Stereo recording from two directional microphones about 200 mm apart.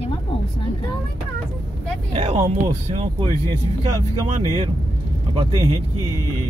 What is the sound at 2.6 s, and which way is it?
Speech, 30° right (ahead or behind).